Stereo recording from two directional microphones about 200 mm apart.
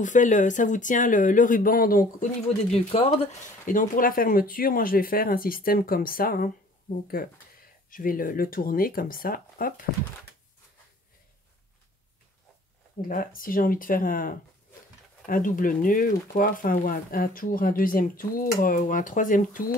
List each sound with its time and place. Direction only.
0.0 s speech: 40° left (ahead or behind)
2.7 s speech: 30° left (ahead or behind)
3.6 s speech: 45° left (ahead or behind)
13.1 s speech: 45° left (ahead or behind)